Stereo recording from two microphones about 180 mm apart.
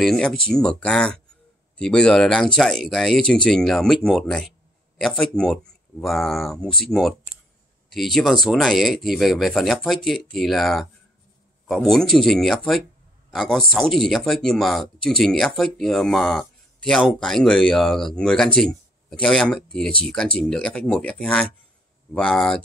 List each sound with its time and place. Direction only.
0.0 s speech: centre (ahead or behind)